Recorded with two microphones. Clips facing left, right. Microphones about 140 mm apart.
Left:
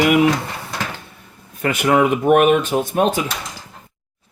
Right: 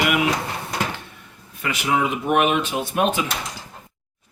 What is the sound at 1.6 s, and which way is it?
Speech, 50° left (ahead or behind).